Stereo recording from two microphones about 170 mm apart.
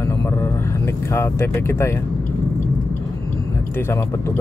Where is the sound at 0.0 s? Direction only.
15° left (ahead or behind).